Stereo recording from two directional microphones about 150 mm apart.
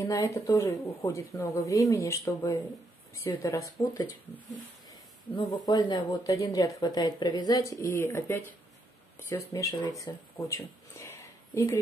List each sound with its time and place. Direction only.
0.0 s speech: 20° left (ahead or behind)
5.3 s speech: 30° left (ahead or behind)
11.0 s a sound: 20° left (ahead or behind)